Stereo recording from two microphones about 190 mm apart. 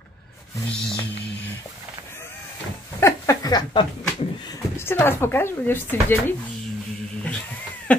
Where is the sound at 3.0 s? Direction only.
15° left (ahead or behind).